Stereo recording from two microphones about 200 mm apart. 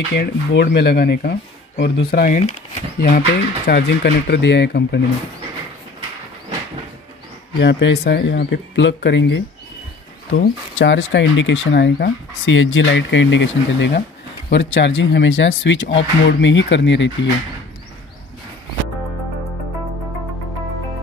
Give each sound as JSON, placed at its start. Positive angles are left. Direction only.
{"t": 0.1, "sound": "speech", "side_deg": 55}
{"t": 7.5, "sound": "speech", "side_deg": 60}
{"t": 10.8, "sound": "speech", "side_deg": 60}